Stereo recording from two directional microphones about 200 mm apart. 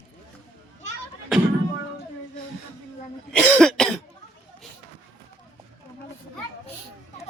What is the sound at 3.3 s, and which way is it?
Speech, 5° left (ahead or behind).